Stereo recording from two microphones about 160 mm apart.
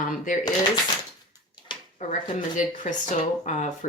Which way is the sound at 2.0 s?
50° left (ahead or behind).